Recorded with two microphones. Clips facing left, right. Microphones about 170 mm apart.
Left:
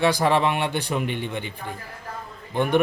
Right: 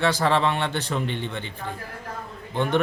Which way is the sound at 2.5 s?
10° left (ahead or behind).